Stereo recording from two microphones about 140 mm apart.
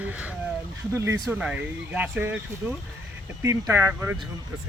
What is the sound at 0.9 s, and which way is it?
Speech, 20° right (ahead or behind).